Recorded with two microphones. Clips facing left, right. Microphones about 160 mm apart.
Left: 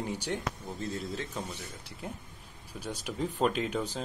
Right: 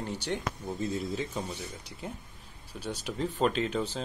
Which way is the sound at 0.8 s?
5° right (ahead or behind).